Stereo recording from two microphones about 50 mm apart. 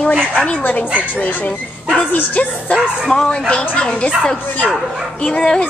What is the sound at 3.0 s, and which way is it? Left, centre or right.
A woman's voice, centre.